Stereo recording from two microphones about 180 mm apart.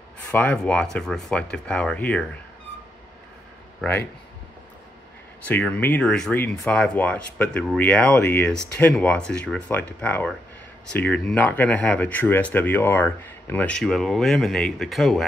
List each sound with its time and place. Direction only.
0.3 s speech: 10° left (ahead or behind)
3.8 s speech: 10° left (ahead or behind)
5.5 s speech: 10° left (ahead or behind)